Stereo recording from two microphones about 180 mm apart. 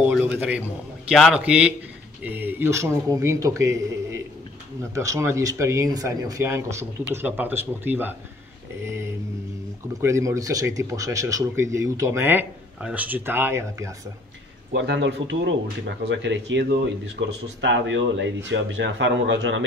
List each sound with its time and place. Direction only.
0.0 s a sound: 5° right (ahead or behind)
1.1 s speech: 5° right (ahead or behind)
9.9 s speech: 15° right (ahead or behind)
14.7 s speech: 90° right